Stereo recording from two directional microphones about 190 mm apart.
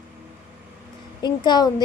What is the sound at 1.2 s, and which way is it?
Speech, 20° left (ahead or behind).